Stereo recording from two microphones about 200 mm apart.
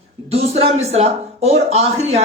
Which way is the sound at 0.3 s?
30° right (ahead or behind).